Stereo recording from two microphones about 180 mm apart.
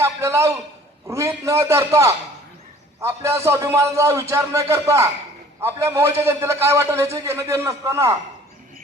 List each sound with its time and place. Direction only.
0.0 s a man's voice: 15° right (ahead or behind)